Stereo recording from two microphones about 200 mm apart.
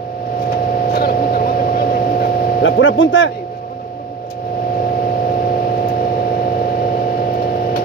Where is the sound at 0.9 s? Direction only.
50° left (ahead or behind).